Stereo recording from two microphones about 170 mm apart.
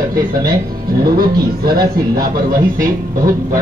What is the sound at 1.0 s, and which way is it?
A man's voice, 60° right (ahead or behind).